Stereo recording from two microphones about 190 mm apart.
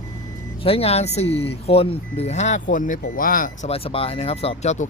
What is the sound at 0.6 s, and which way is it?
Speech, 30° left (ahead or behind).